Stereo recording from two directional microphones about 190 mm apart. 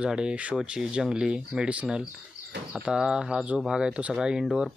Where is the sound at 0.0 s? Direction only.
5° right (ahead or behind).